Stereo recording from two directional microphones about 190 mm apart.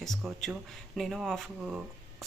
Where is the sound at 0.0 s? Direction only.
Centre (ahead or behind).